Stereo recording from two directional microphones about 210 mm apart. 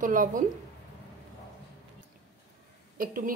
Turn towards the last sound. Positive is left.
turn(degrees=-40)  # may be behind; listen again after turning